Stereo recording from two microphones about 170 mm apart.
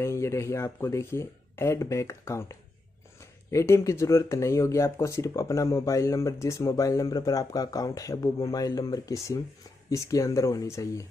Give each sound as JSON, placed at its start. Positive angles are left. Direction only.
{"t": 0.0, "sound": "speech", "side_deg": 15}